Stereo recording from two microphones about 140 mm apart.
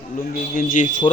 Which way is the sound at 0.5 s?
70° left (ahead or behind).